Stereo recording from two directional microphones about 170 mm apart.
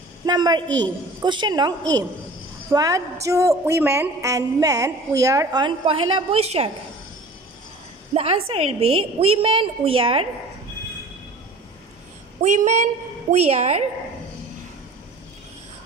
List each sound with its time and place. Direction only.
0.3 s a woman's voice: 25° right (ahead or behind)
8.1 s a woman's voice: 35° right (ahead or behind)
12.4 s a woman's voice: 45° right (ahead or behind)